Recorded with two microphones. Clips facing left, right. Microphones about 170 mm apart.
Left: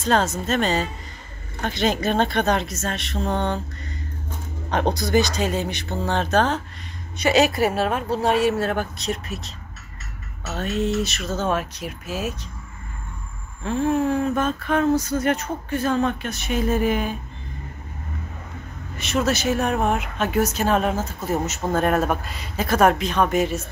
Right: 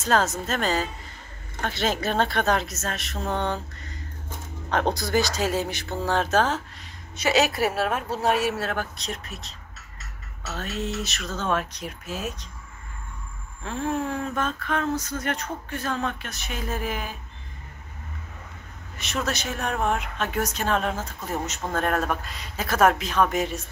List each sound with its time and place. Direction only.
0.0 s speech: 5° right (ahead or behind)
3.2 s mantra: 25° left (ahead or behind)
4.6 s speech: 15° left (ahead or behind)
5.1 s speech: centre (ahead or behind)
10.6 s speech: centre (ahead or behind)
13.7 s speech: centre (ahead or behind)
18.9 s speech: centre (ahead or behind)